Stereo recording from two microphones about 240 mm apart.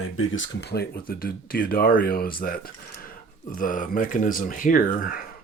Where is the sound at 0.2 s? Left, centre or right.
Left.